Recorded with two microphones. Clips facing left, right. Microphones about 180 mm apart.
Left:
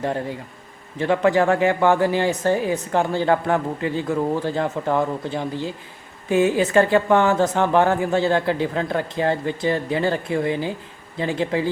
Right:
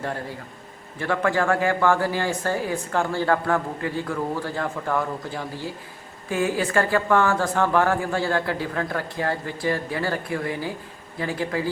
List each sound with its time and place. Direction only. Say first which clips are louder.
0.9 s speech: left 5 dB; 20° left (ahead or behind)